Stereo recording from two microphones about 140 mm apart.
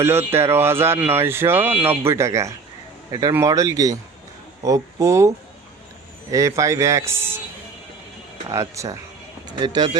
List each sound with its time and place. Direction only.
0.0 s speech: 20° right (ahead or behind)
6.3 s speech: 25° right (ahead or behind)
8.4 s speech: 20° right (ahead or behind)